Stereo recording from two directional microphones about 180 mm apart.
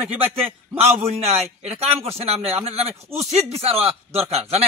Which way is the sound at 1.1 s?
35° right (ahead or behind).